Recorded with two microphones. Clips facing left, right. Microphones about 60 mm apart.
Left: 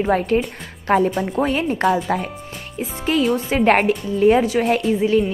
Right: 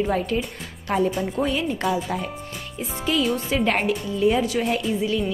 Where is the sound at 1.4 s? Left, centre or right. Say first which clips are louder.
Left 6 dB; left.